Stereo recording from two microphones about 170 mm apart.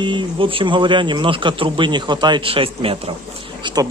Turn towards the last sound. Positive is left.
turn(degrees=-25)  # may be behind; listen again after turning